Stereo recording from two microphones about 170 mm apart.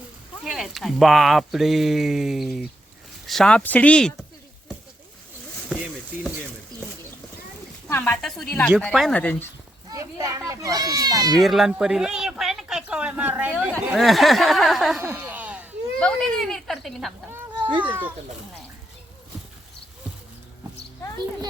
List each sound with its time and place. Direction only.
0.4 s speech: centre (ahead or behind)
7.9 s speech: 10° left (ahead or behind)
9.9 s a child's voice: 20° right (ahead or behind)
11.3 s speech: centre (ahead or behind)
15.0 s a sound: 10° right (ahead or behind)
16.0 s speech: 5° left (ahead or behind)
17.3 s a sound: 10° right (ahead or behind)